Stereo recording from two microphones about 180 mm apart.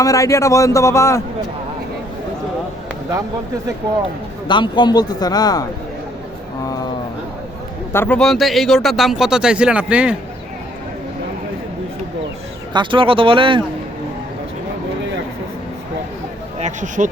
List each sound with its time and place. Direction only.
0.0 s a man's voice: 20° left (ahead or behind)
4.4 s a man's voice: 25° left (ahead or behind)
7.9 s speech: 10° left (ahead or behind); by 10.2 s 5° right (ahead or behind)
12.7 s speech: 25° right (ahead or behind)
16.6 s speech: 45° right (ahead or behind)